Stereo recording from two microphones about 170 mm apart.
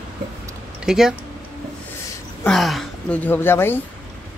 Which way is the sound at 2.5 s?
Centre (ahead or behind).